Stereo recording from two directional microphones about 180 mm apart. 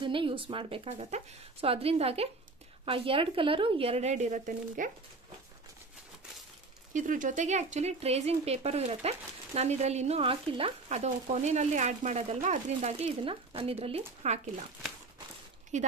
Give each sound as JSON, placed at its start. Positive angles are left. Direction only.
{"t": 0.0, "sound": "speech", "side_deg": -30}
{"t": 6.9, "sound": "speech", "side_deg": -45}
{"t": 15.7, "sound": "speech", "side_deg": -40}